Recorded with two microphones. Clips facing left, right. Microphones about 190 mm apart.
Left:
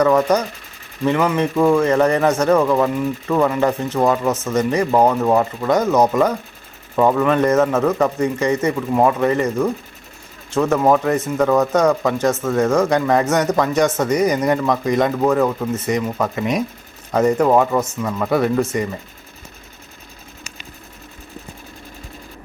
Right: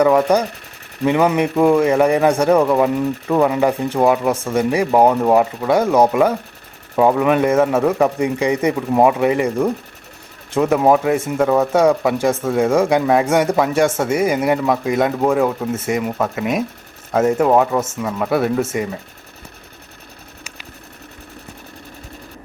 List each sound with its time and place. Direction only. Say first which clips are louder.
0.0 s speech: right 1 dB; 10° right (ahead or behind)